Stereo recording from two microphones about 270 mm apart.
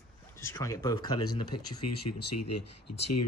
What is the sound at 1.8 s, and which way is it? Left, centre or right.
Speech, left.